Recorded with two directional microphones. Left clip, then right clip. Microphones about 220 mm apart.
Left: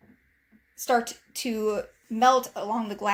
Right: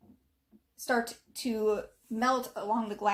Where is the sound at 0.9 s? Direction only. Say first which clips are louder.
Left 6 dB; 50° left (ahead or behind).